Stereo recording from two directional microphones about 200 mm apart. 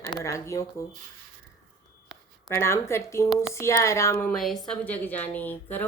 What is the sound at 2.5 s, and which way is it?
Speech, 15° left (ahead or behind).